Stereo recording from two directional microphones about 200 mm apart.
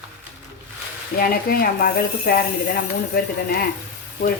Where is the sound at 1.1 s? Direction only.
50° left (ahead or behind).